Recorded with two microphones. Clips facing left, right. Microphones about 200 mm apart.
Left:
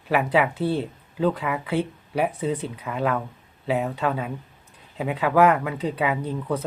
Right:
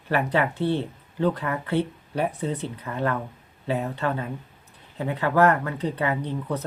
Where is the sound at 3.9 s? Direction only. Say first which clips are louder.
Left 2 dB; 90° left.